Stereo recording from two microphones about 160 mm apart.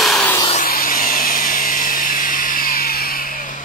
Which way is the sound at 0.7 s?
65° left (ahead or behind).